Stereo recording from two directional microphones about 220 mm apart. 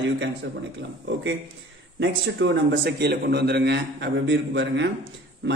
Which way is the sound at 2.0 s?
55° right (ahead or behind).